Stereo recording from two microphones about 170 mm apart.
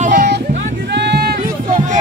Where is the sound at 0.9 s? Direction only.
80° right.